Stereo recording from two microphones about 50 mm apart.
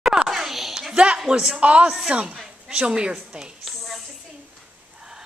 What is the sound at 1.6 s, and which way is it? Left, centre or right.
A woman's voice, right.